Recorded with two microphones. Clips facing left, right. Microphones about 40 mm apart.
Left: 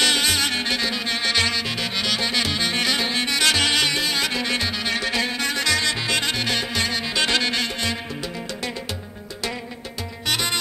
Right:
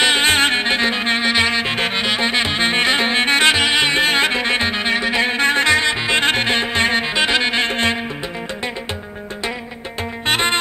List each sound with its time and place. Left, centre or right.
0.0 s music: right
3.5 s music: right
7.2 s music: right
10.2 s music: right